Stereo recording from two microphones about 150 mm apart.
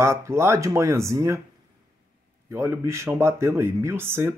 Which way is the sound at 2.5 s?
15° right (ahead or behind).